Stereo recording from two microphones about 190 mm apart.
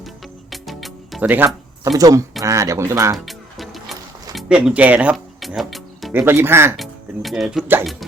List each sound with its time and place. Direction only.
0.5 s music: centre (ahead or behind); by 2.2 s 20° right (ahead or behind)
2.4 s speech: 15° right (ahead or behind)
3.2 s music: centre (ahead or behind)
4.4 s speech: 5° right (ahead or behind)
6.7 s speech: centre (ahead or behind)